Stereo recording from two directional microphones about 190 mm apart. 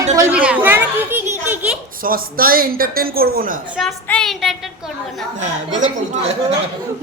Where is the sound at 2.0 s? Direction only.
50° right (ahead or behind).